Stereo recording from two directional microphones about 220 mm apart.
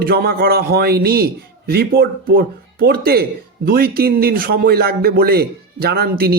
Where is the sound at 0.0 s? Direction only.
45° right (ahead or behind).